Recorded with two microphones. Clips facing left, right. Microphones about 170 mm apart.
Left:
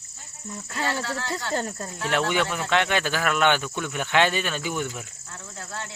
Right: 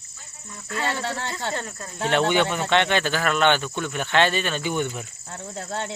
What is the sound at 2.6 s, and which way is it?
Speech, 5° left (ahead or behind).